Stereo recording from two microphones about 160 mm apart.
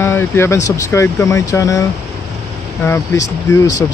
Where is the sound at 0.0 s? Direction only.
15° left (ahead or behind).